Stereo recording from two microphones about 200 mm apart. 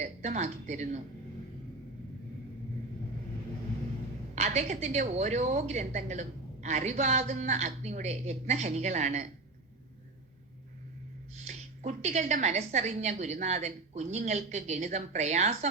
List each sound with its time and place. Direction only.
0.0 s a woman's voice: 35° right (ahead or behind)
4.4 s a woman's voice: 35° right (ahead or behind)
11.3 s a woman's voice: 35° right (ahead or behind)